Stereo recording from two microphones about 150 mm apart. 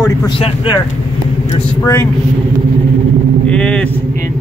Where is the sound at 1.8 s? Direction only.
20° left (ahead or behind).